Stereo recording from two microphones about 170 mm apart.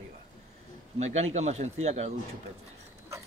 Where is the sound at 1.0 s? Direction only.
40° right (ahead or behind).